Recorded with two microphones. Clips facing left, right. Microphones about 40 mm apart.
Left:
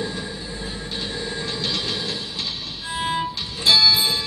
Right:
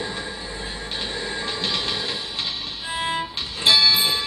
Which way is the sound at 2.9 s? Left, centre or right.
Centre.